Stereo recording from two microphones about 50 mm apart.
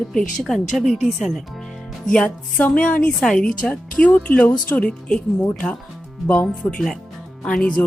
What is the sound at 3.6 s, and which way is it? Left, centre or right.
A woman's voice, left.